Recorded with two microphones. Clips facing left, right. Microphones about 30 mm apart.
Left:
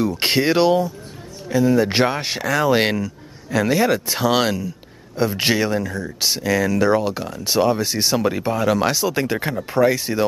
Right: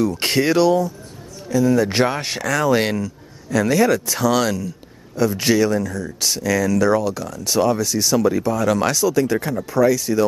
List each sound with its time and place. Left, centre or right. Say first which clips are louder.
0.2 s speech: left 1 dB; left
8.6 s speech: left 2 dB; centre
9.0 s speech: right 3 dB; left